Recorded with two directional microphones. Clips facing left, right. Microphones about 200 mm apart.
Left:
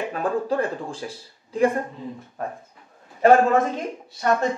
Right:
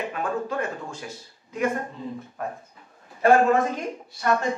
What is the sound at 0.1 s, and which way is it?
Speech, 35° left (ahead or behind).